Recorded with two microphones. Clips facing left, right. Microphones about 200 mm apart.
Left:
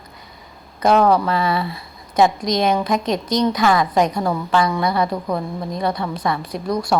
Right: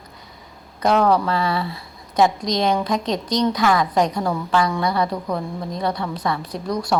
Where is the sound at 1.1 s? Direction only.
15° left (ahead or behind).